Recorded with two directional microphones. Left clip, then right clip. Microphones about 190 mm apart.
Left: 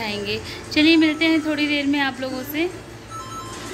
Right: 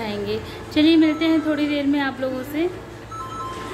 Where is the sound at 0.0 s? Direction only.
5° right (ahead or behind).